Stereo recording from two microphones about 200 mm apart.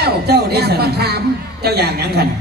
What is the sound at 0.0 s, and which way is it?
A woman's voice, 55° right (ahead or behind).